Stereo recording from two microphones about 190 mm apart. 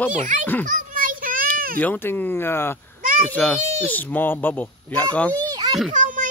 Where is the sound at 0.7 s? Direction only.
45° right (ahead or behind).